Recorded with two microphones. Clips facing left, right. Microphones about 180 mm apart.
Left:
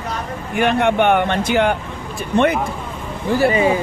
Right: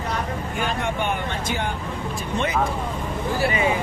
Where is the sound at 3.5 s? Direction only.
30° left (ahead or behind).